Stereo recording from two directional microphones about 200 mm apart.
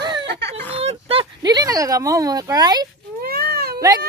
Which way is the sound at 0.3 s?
55° right (ahead or behind).